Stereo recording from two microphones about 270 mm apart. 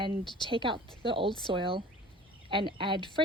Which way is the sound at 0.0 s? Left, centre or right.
Centre.